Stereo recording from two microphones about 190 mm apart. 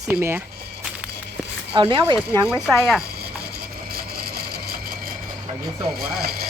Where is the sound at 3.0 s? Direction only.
55° right (ahead or behind).